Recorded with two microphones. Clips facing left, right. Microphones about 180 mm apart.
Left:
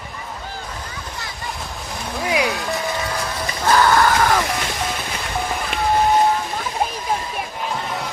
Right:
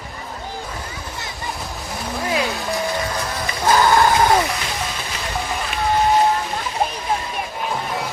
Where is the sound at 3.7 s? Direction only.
15° right (ahead or behind).